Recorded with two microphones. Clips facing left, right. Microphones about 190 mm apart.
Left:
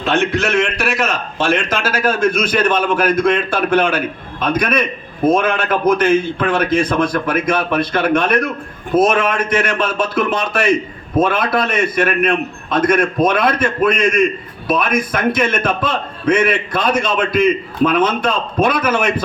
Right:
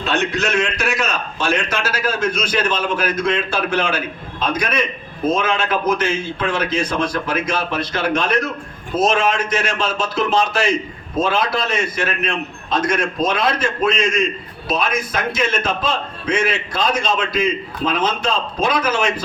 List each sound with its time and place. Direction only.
1.7 s a man's voice: 55° left (ahead or behind)